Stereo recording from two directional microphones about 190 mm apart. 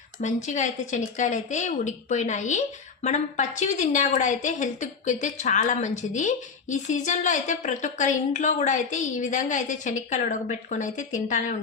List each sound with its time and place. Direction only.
0.2 s speech: 40° left (ahead or behind)